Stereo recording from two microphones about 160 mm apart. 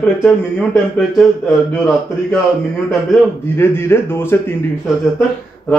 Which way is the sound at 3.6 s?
15° left (ahead or behind).